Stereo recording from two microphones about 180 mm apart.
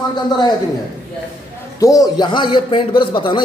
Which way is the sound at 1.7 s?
20° left (ahead or behind).